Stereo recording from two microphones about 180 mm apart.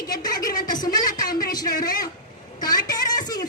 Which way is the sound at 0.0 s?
20° left (ahead or behind).